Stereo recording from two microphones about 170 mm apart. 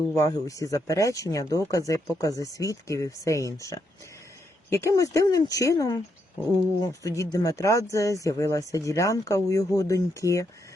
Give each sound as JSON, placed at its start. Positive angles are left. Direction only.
{"t": 0.2, "sound": "speech", "side_deg": 20}